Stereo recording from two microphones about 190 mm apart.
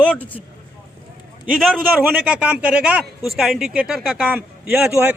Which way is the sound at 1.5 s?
Centre (ahead or behind).